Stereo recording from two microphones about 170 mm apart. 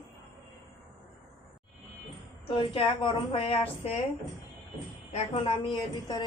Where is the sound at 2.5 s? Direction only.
30° left (ahead or behind).